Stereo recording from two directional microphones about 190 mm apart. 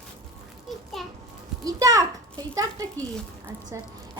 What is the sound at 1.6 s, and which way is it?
A child's voice, 20° right (ahead or behind).